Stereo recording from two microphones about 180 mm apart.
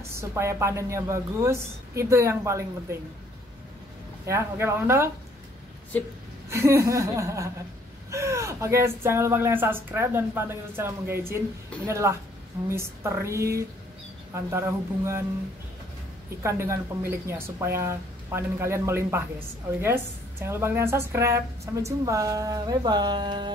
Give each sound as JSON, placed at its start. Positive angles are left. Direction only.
{"t": 0.1, "sound": "speech", "side_deg": -15}
{"t": 4.3, "sound": "speech", "side_deg": -15}
{"t": 6.5, "sound": "speech", "side_deg": -15}
{"t": 16.4, "sound": "speech", "side_deg": -15}
{"t": 20.4, "sound": "speech", "side_deg": -15}